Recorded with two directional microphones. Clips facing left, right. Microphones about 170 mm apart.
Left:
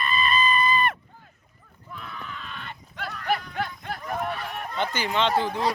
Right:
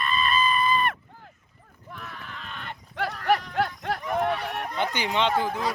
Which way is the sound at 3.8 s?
70° right (ahead or behind).